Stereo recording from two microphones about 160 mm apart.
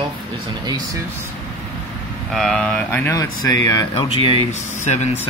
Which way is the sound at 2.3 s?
Centre (ahead or behind).